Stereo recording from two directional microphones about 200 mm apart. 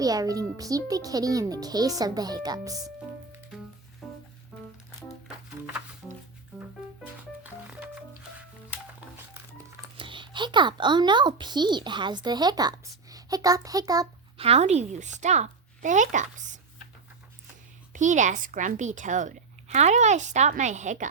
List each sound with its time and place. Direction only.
0.0 s a child's voice: 20° right (ahead or behind)
5.6 s music: 10° right (ahead or behind)
10.0 s a child's voice: 25° right (ahead or behind)
14.4 s speech: 30° right (ahead or behind)
17.9 s speech: 40° right (ahead or behind)